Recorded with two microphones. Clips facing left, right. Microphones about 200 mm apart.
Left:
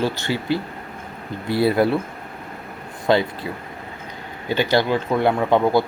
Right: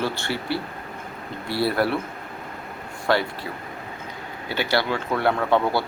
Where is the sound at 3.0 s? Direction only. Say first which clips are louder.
Left 4 dB; 20° left (ahead or behind).